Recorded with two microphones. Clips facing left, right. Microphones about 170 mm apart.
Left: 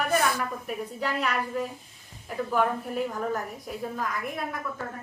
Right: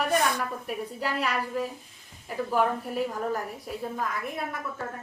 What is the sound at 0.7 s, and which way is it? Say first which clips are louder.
A man's voice: even; 5° right (ahead or behind).